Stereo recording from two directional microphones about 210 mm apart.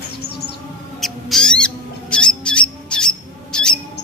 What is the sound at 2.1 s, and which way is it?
Bird, 5° left (ahead or behind).